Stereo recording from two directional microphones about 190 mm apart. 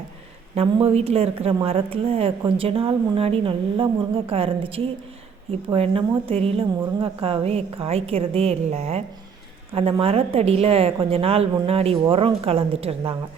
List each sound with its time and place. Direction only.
0.5 s a woman's voice: 30° right (ahead or behind)